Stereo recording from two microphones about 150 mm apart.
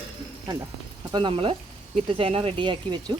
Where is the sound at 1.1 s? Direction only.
35° right (ahead or behind).